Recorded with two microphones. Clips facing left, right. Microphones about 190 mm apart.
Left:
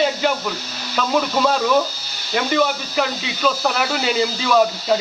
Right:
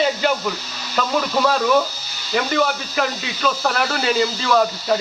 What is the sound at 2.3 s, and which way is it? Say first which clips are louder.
Speech: left 1 dB; centre (ahead or behind).